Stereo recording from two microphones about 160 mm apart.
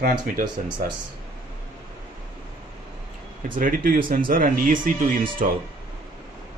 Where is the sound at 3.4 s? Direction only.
60° right (ahead or behind).